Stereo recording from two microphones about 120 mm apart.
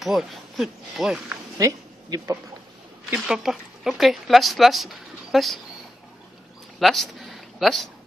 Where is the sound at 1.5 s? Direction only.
30° right (ahead or behind).